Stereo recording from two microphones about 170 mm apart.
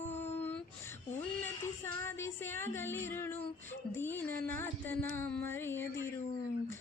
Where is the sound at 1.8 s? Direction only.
15° left (ahead or behind).